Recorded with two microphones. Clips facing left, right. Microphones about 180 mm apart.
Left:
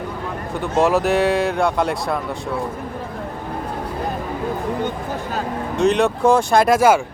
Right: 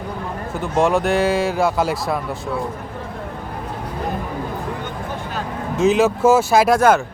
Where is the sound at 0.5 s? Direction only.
Centre (ahead or behind).